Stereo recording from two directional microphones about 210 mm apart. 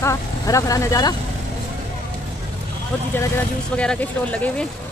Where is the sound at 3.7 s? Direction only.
5° left (ahead or behind).